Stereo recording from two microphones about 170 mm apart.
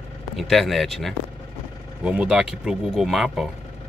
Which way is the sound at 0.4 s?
Centre (ahead or behind).